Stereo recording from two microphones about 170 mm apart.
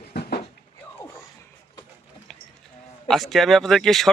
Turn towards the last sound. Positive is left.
turn(degrees=0)  # may be behind; listen again after turning